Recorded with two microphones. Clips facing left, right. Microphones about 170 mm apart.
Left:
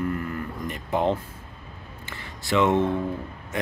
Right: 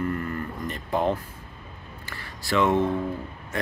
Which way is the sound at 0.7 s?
20° left (ahead or behind).